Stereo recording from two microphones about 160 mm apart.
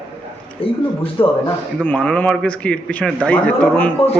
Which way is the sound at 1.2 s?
35° left (ahead or behind).